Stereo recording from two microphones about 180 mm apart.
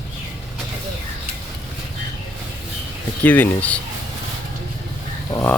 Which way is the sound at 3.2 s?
10° left (ahead or behind).